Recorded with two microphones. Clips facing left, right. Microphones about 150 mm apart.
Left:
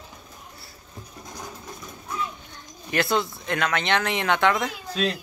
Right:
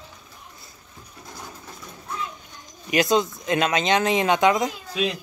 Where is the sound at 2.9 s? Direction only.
15° right (ahead or behind).